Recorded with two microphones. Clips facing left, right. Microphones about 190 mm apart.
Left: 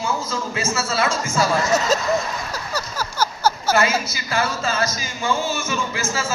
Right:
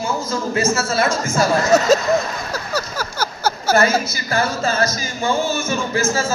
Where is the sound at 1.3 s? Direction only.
45° right (ahead or behind).